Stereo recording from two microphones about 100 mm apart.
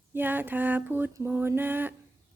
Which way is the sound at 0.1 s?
20° right (ahead or behind).